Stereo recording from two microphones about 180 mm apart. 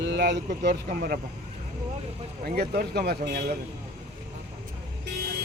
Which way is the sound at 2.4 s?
60° right (ahead or behind).